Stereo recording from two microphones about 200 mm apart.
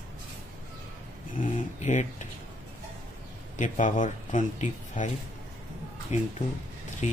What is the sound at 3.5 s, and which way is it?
Speech, 40° left (ahead or behind).